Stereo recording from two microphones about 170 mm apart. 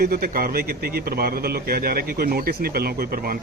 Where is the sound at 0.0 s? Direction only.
65° right (ahead or behind).